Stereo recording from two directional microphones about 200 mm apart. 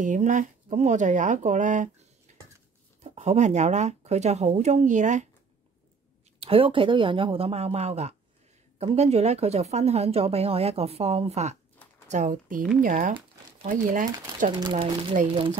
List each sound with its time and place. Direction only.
0.0 s a woman's voice: 40° right (ahead or behind)
2.3 s a sound: 35° right (ahead or behind)
3.0 s a woman's voice: 35° right (ahead or behind)
6.4 s a woman's voice: 25° right (ahead or behind); by 13.1 s 40° right (ahead or behind)
14.5 s speech: 20° right (ahead or behind)